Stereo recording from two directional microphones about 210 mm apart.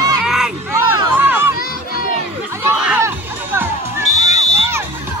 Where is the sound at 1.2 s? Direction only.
10° right (ahead or behind).